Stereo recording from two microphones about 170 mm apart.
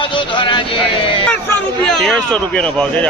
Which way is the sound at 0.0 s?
30° left (ahead or behind).